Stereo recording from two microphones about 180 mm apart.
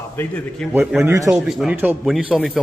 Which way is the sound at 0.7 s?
15° right (ahead or behind).